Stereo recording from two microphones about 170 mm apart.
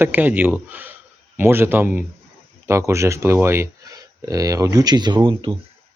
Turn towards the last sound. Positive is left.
turn(degrees=-30)  # may be behind; listen again after turning